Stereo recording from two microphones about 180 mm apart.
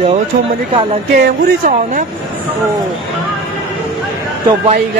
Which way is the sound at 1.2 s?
45° right (ahead or behind).